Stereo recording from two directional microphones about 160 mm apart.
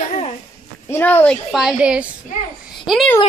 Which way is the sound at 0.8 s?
15° left (ahead or behind).